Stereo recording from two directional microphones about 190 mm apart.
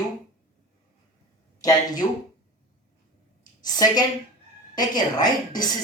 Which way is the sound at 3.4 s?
20° left (ahead or behind).